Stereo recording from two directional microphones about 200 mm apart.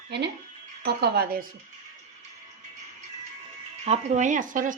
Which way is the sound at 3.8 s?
35° right (ahead or behind).